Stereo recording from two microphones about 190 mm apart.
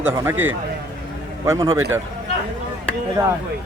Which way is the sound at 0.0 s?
15° right (ahead or behind).